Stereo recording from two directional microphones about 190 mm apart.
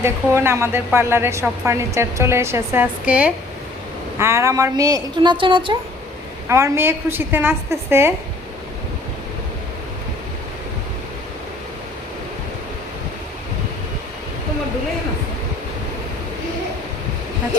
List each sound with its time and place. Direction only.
0.0 s a woman's voice: 15° right (ahead or behind)
6.5 s a woman's voice: 15° right (ahead or behind)